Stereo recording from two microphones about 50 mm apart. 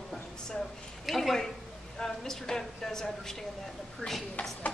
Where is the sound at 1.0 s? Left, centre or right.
Centre.